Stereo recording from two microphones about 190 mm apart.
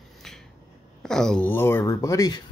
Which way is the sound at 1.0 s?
5° left (ahead or behind).